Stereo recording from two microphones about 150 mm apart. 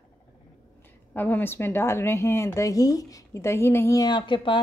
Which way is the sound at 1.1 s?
15° left (ahead or behind).